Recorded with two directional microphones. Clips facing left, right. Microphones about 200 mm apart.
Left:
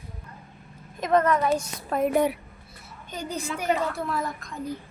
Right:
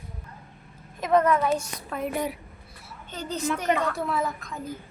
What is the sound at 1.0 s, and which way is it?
Speech, 10° right (ahead or behind).